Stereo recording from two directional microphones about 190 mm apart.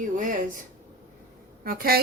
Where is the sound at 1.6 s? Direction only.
50° right (ahead or behind).